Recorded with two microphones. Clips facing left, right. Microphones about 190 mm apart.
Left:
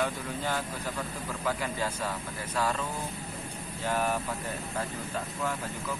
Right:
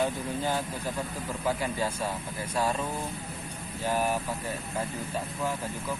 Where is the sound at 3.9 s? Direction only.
10° right (ahead or behind).